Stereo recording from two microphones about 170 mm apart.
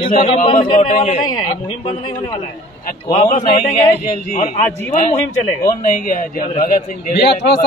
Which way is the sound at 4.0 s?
40° left (ahead or behind).